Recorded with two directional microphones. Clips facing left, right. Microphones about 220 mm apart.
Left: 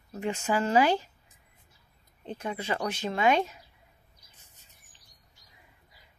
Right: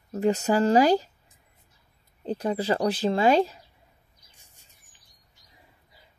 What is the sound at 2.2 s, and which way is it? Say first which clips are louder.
Speech: right 8 dB; 35° right (ahead or behind).